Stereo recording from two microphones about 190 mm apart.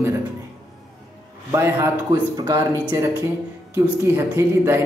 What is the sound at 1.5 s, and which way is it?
Speech, 15° right (ahead or behind).